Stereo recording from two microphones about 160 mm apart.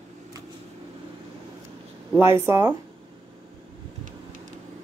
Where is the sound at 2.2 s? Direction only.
15° right (ahead or behind).